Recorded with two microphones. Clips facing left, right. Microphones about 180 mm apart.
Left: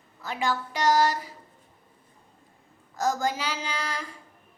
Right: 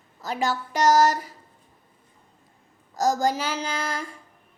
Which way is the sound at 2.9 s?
40° right (ahead or behind).